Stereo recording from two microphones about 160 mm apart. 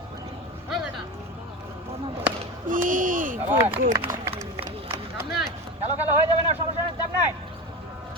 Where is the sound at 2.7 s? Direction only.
55° right (ahead or behind).